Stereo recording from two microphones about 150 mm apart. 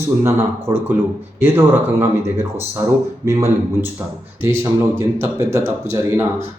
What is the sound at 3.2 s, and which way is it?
A man's voice, 20° right (ahead or behind).